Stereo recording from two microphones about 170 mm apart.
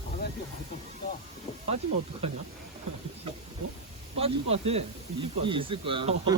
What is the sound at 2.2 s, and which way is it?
Speech, 35° right (ahead or behind).